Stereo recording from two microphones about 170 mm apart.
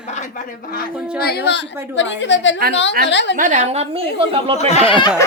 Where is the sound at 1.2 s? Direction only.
70° left (ahead or behind); by 3.3 s 90° left.